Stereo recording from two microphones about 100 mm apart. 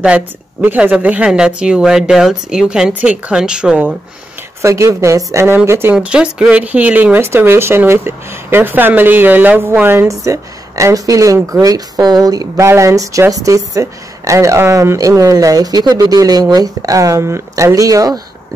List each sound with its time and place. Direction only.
0.0 s speech: 15° right (ahead or behind)
4.6 s speech: 30° right (ahead or behind)
5.9 s speech: 10° right (ahead or behind); by 18.2 s 35° right (ahead or behind)